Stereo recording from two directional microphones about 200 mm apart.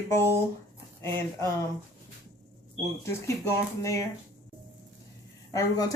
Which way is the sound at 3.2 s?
15° left (ahead or behind).